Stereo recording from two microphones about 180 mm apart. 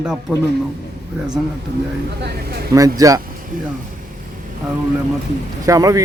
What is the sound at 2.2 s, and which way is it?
Speech, 60° right (ahead or behind).